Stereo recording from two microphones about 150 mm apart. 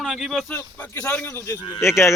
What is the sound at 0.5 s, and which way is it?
Speech, 10° left (ahead or behind).